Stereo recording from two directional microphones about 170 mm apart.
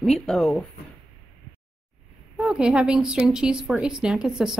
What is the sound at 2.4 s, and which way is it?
A woman's voice, 5° right (ahead or behind).